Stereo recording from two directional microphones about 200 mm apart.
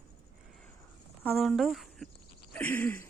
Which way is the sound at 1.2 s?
Centre (ahead or behind).